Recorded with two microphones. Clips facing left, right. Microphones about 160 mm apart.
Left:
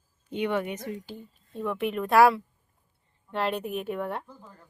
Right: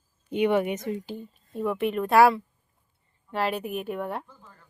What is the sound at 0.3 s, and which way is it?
Speech, 15° right (ahead or behind).